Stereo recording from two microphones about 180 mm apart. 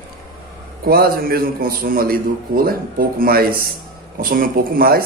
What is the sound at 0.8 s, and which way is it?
A man's voice, 55° right (ahead or behind).